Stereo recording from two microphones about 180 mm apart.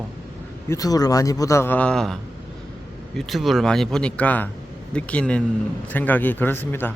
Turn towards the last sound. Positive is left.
turn(degrees=10)  # may be behind; listen again after turning